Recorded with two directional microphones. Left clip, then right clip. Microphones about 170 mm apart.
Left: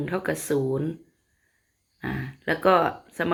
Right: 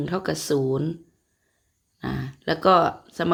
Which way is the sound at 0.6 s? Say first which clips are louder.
Right 2 dB; 35° right (ahead or behind).